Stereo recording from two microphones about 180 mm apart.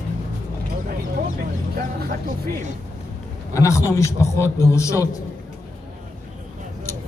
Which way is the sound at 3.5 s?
15° left (ahead or behind).